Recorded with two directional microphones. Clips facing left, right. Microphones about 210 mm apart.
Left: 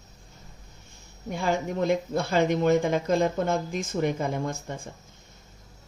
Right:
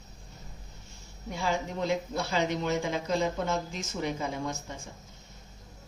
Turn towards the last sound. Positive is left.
turn(degrees=55)  # may be behind; listen again after turning